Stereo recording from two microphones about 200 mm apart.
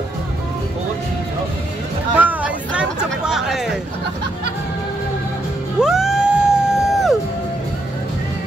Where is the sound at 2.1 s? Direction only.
5° right (ahead or behind).